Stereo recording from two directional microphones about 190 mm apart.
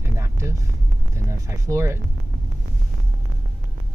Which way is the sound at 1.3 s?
15° right (ahead or behind).